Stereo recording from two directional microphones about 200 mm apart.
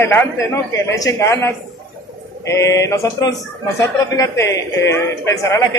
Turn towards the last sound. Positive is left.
turn(degrees=15)  # may be behind; listen again after turning